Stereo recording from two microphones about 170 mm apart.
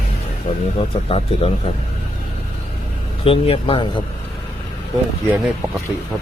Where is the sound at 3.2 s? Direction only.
35° left (ahead or behind).